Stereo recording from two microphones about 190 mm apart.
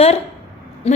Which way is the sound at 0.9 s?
30° left (ahead or behind).